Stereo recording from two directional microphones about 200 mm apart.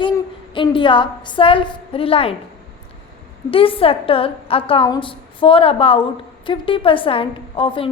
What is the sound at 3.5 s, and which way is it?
A woman's voice, 25° left (ahead or behind).